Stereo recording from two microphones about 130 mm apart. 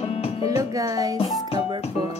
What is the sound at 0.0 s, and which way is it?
Music, 50° left (ahead or behind).